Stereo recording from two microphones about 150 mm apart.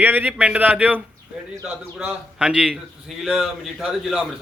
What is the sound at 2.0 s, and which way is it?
A man's voice, 5° right (ahead or behind).